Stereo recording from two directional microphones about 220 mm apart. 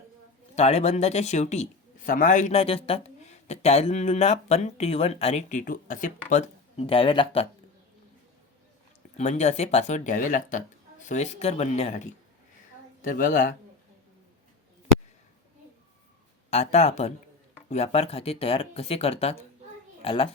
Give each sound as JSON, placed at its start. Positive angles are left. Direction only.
{"t": 0.5, "sound": "speech", "side_deg": 30}
{"t": 9.1, "sound": "speech", "side_deg": 30}
{"t": 16.5, "sound": "a child's voice", "side_deg": 30}